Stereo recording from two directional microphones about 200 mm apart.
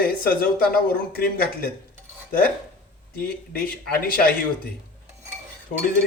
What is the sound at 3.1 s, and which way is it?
Speech, 50° left (ahead or behind).